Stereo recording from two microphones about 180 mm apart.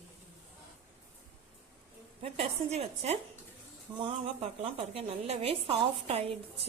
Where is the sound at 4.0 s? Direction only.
35° right (ahead or behind).